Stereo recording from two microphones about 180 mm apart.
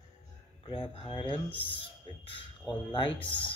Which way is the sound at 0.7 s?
30° left (ahead or behind).